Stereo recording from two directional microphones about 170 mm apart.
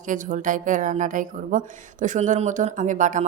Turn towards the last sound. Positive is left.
turn(degrees=-50)  # may be behind; listen again after turning